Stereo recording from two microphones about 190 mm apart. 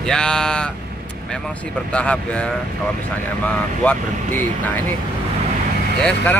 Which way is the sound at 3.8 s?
10° left (ahead or behind).